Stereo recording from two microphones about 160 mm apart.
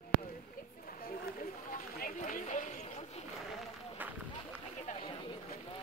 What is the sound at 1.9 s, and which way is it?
Run, 60° left (ahead or behind).